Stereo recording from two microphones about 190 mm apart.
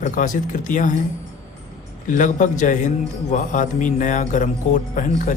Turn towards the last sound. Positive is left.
turn(degrees=45)  # may be behind; listen again after turning